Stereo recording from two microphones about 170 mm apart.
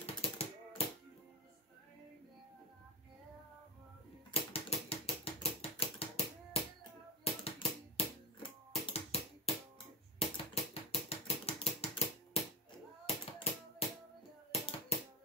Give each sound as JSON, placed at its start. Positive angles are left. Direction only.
{"t": 0.0, "sound": "typewriter", "side_deg": 35}
{"t": 4.3, "sound": "typewriter", "side_deg": 35}
{"t": 7.4, "sound": "music", "side_deg": 30}
{"t": 10.1, "sound": "a sound", "side_deg": 35}
{"t": 13.0, "sound": "tap", "side_deg": 35}
{"t": 14.5, "sound": "a sound", "side_deg": 35}